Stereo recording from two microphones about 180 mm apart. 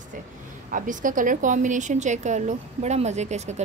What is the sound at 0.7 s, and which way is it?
A woman's voice, 50° right (ahead or behind).